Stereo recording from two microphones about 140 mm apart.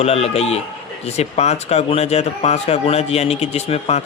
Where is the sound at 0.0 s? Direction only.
45° left (ahead or behind).